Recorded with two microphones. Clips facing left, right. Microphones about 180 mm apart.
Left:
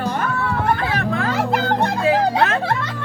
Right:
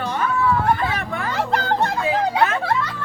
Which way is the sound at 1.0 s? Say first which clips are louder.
Left 5 dB; 75° left (ahead or behind).